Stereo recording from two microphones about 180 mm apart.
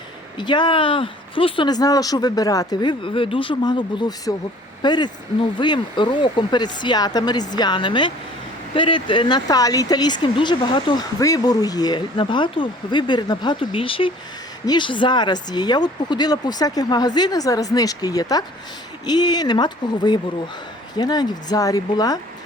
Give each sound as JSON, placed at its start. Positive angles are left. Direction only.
{"t": 0.3, "sound": "speech", "side_deg": 25}